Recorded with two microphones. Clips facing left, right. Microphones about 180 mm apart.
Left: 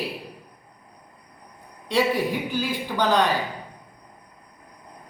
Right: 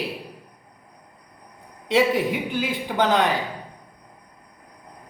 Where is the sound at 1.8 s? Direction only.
20° right (ahead or behind).